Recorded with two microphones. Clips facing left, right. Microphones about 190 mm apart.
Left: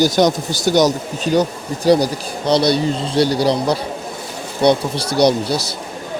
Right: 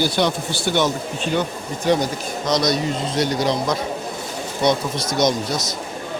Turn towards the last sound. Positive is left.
turn(degrees=30)  # may be behind; listen again after turning